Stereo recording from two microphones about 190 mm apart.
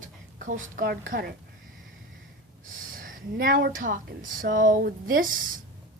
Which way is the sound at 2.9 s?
50° right (ahead or behind).